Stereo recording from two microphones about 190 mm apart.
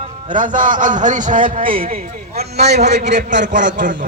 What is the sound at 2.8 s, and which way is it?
Speech, 65° right (ahead or behind).